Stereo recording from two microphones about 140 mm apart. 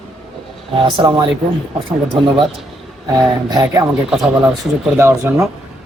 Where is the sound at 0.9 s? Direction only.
30° right (ahead or behind).